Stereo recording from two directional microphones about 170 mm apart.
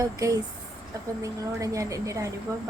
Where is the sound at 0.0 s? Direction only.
20° right (ahead or behind).